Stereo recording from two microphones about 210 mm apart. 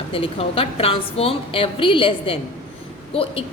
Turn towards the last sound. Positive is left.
turn(degrees=25)  # may be behind; listen again after turning